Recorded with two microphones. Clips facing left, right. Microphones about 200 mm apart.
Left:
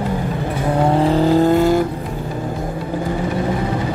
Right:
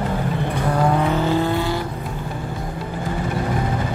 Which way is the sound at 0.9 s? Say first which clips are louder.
Left 5 dB; 30° left (ahead or behind).